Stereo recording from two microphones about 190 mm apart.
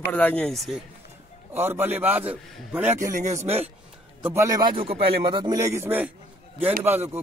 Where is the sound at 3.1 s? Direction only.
40° right (ahead or behind).